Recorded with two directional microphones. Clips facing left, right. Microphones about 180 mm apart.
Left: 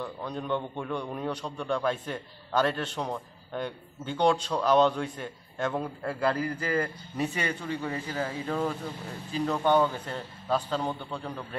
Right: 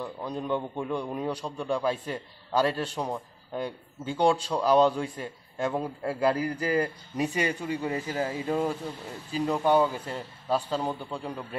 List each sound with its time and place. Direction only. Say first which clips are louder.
0.0 s a man's voice: right 1 dB; 5° right (ahead or behind)